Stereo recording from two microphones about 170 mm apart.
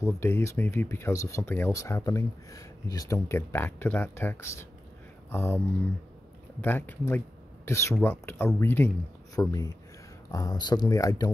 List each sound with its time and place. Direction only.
0.0 s speech: 15° left (ahead or behind)
6.6 s speech: 10° left (ahead or behind)